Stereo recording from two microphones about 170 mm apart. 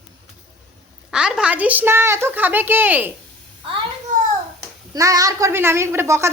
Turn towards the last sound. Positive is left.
turn(degrees=-15)  # may be behind; listen again after turning